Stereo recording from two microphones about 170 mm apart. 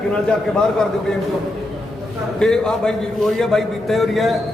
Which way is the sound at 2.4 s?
5° left (ahead or behind).